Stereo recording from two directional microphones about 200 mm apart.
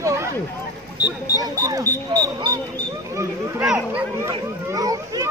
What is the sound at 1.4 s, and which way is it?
Speech, 15° right (ahead or behind).